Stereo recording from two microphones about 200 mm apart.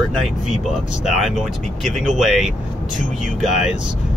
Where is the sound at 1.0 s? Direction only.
Centre (ahead or behind).